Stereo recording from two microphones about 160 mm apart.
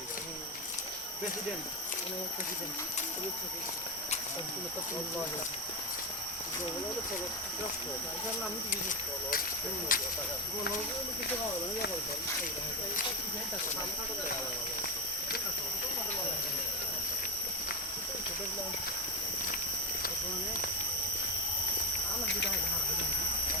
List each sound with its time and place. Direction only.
9.9 s speech: 60° left (ahead or behind)